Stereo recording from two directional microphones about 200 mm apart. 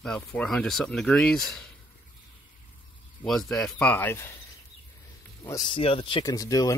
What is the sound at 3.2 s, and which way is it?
Speech, centre (ahead or behind).